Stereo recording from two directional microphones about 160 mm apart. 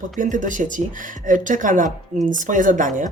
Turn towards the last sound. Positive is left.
turn(degrees=-55)  # may be behind; listen again after turning